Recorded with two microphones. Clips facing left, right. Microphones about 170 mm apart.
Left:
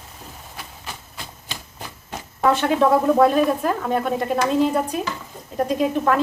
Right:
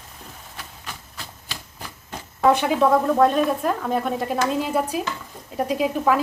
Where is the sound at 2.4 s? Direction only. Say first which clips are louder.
Right 1 dB; 15° right (ahead or behind).